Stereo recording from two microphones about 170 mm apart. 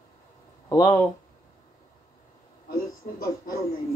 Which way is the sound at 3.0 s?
50° left (ahead or behind).